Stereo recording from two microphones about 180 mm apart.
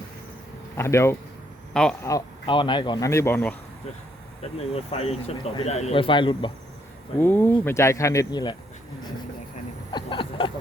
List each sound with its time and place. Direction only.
0.8 s speech: 15° left (ahead or behind)
1.7 s speech: 5° left (ahead or behind)
2.0 s speech: 25° left (ahead or behind)
4.5 s speech: 35° left (ahead or behind)
7.2 s speech: 10° left (ahead or behind)
9.9 s a sound: 30° left (ahead or behind)